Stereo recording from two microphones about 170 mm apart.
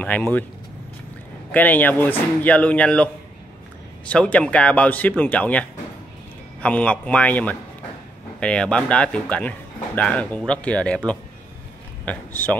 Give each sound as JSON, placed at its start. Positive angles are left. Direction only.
{"t": 0.0, "sound": "speech", "side_deg": 5}
{"t": 1.5, "sound": "speech", "side_deg": 10}
{"t": 4.1, "sound": "speech", "side_deg": 5}
{"t": 12.0, "sound": "speech", "side_deg": 10}